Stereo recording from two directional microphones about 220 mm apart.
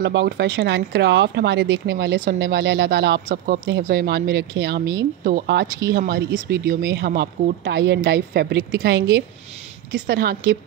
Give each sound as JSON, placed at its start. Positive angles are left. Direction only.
{"t": 0.0, "sound": "speech", "side_deg": -50}